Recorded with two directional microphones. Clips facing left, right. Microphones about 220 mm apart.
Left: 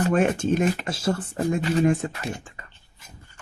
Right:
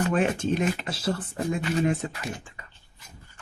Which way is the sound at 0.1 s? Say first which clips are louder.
Left 3 dB; 45° left (ahead or behind).